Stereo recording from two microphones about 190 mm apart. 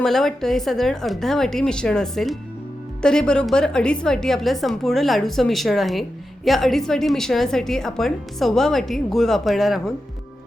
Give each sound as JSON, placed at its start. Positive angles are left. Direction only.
{"t": 0.0, "sound": "a woman's voice", "side_deg": 0}